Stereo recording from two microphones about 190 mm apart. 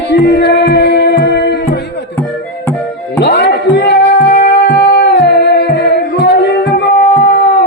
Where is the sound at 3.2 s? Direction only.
65° left (ahead or behind).